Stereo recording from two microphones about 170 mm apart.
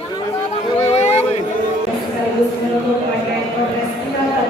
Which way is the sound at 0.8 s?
40° left (ahead or behind).